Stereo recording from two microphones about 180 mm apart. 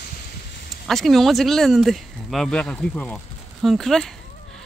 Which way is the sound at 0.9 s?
Centre (ahead or behind).